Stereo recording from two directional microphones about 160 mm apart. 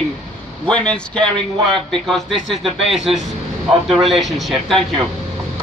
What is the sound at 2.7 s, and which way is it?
Speech, 35° right (ahead or behind).